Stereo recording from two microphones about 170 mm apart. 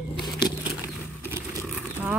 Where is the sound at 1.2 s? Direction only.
15° right (ahead or behind).